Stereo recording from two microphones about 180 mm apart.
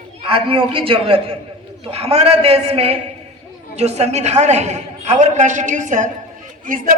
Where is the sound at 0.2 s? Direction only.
30° right (ahead or behind).